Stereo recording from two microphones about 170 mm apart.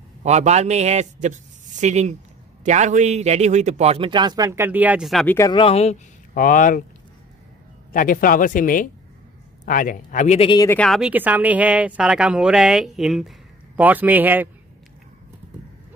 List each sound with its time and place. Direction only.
0.2 s a man's voice: 40° right (ahead or behind); by 5.2 s 5° right (ahead or behind)
5.2 s speech: 10° left (ahead or behind)
5.5 s speech: 35° left (ahead or behind)
6.3 s speech: 55° left (ahead or behind)
7.9 s speech: 55° left (ahead or behind)
10.7 s speech: 5° left (ahead or behind)
11.0 s speech: 10° right (ahead or behind)